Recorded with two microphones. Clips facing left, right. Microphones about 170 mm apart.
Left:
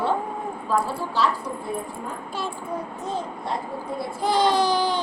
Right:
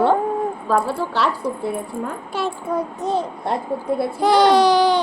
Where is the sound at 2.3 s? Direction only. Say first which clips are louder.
Right 8 dB; 75° right (ahead or behind).